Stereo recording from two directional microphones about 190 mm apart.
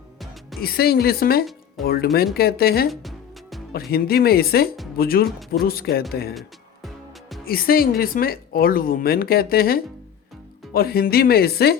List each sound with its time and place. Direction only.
0.6 s speech: 55° left (ahead or behind)
2.9 s music: centre (ahead or behind)
3.7 s speech: 55° left (ahead or behind)
7.4 s speech: 50° left (ahead or behind)